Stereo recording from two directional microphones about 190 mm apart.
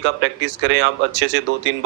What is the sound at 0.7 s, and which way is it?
Speech, 70° right (ahead or behind).